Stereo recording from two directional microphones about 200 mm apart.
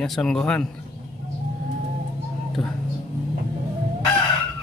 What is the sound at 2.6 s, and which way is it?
Speech, centre (ahead or behind).